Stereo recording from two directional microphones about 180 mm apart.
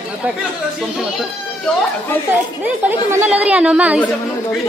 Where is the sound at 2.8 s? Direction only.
10° right (ahead or behind).